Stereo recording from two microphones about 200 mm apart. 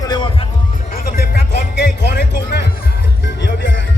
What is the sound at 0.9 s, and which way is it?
Music, 50° left (ahead or behind).